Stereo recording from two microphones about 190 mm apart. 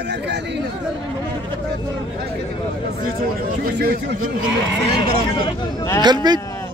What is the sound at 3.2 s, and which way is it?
Speech, 50° right (ahead or behind).